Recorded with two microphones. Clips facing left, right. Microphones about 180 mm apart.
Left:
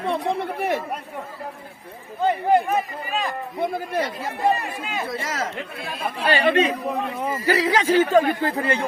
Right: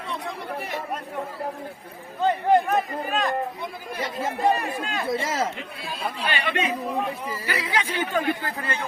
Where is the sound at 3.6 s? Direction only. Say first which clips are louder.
Left 8 dB; 50° left (ahead or behind).